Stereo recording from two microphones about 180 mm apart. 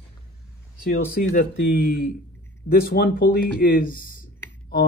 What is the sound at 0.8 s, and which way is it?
Speech, 55° left (ahead or behind).